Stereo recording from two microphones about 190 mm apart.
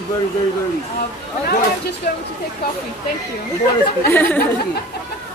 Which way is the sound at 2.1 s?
45° left (ahead or behind).